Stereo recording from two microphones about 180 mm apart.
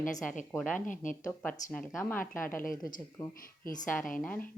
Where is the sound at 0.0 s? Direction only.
45° left (ahead or behind).